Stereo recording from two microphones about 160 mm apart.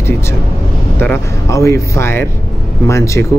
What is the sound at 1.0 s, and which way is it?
A man's voice, 15° left (ahead or behind).